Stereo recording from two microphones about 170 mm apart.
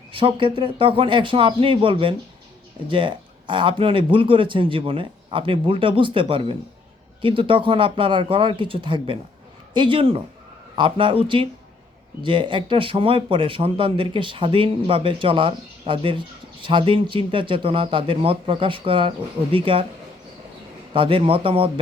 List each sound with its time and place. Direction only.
0.1 s speech: 30° right (ahead or behind)
20.9 s speech: 30° right (ahead or behind)